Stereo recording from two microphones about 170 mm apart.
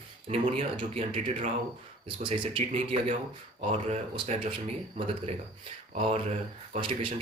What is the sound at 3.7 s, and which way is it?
Speech, 40° right (ahead or behind).